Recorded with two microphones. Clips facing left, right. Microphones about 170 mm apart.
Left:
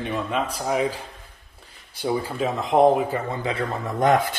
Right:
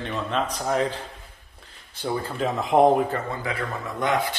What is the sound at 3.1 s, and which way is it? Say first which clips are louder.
Speech: left 3 dB; 25° left (ahead or behind).